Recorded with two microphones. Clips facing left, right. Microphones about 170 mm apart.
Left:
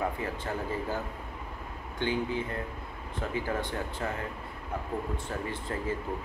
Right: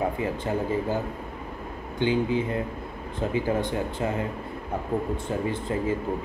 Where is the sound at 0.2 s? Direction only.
15° right (ahead or behind).